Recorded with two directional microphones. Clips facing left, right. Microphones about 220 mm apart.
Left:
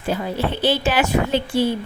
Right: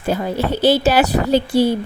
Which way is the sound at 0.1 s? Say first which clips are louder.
Right 3 dB; 45° right (ahead or behind).